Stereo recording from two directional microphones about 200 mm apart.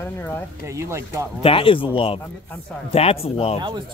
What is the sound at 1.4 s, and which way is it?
Speech, 25° left (ahead or behind).